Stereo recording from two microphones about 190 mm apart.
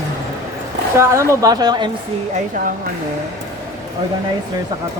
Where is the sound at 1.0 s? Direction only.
15° right (ahead or behind).